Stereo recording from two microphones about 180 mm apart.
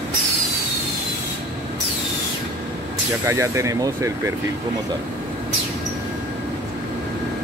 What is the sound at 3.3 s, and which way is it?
Speech, 15° right (ahead or behind).